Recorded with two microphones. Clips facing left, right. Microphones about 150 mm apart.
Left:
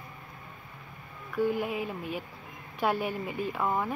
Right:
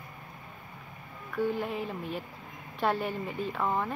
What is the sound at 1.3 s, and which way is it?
A woman's voice, 5° left (ahead or behind).